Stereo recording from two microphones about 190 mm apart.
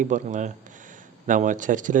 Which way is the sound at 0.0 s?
40° right (ahead or behind).